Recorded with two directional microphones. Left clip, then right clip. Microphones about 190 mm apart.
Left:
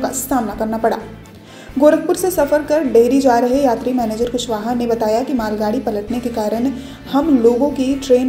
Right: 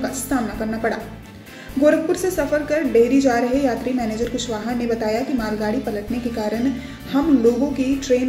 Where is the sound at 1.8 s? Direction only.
15° right (ahead or behind).